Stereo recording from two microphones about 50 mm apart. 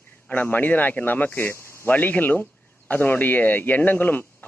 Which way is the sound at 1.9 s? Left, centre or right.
Left.